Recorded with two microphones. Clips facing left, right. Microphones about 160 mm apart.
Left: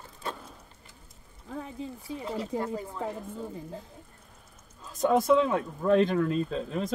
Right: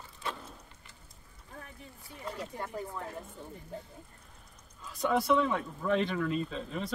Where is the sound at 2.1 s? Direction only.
90° left.